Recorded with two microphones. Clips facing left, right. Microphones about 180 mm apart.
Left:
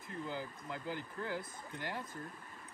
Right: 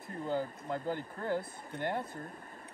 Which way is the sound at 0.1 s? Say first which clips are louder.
Right 7 dB; 50° right (ahead or behind).